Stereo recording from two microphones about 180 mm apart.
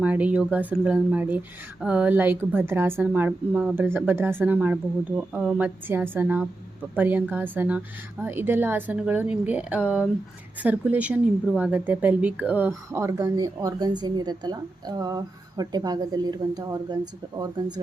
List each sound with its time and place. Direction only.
0.0 s a woman's voice: 5° right (ahead or behind)